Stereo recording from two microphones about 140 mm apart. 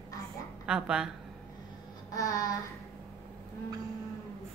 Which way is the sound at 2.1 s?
25° left (ahead or behind).